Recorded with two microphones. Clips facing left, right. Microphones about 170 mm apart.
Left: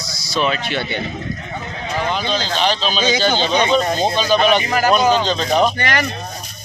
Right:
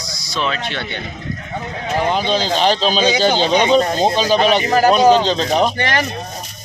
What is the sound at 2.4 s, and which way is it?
Speech, 40° right (ahead or behind).